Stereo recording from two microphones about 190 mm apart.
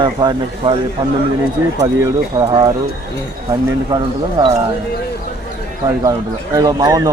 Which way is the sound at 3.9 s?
15° right (ahead or behind).